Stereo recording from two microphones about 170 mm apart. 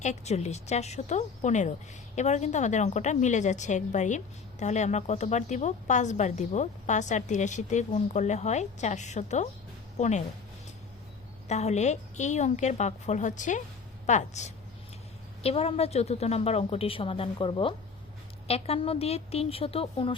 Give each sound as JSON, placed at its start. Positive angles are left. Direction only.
{"t": 0.0, "sound": "a woman's voice", "side_deg": 40}
{"t": 11.4, "sound": "a woman's voice", "side_deg": 40}